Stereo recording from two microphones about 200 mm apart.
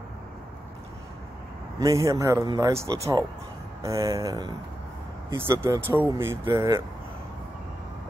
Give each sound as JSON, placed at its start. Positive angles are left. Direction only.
{"t": 1.8, "sound": "speech", "side_deg": -15}